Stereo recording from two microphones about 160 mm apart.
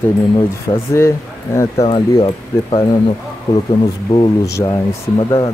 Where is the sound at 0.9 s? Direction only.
15° left (ahead or behind).